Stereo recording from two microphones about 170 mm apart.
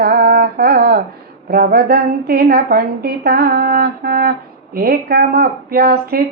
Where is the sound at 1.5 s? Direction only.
65° right (ahead or behind).